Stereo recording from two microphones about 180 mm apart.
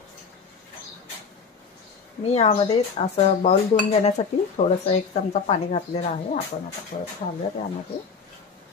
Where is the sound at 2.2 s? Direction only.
35° left (ahead or behind).